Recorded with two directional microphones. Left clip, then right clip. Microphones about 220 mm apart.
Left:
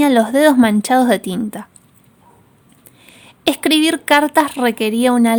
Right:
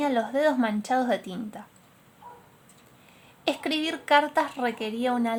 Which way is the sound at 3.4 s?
45° left (ahead or behind).